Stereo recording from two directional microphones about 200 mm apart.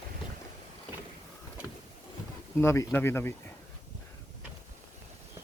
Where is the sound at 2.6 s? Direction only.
10° left (ahead or behind).